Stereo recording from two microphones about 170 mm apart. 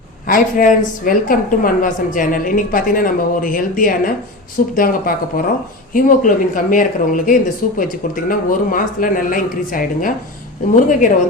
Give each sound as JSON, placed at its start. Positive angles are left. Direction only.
{"t": 0.3, "sound": "a woman's voice", "side_deg": 55}